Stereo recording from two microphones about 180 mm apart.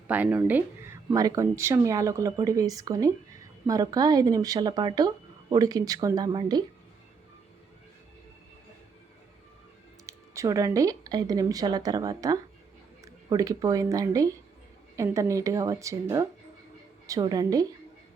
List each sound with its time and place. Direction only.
0.1 s speech: 10° right (ahead or behind)
10.1 s speech: 20° right (ahead or behind)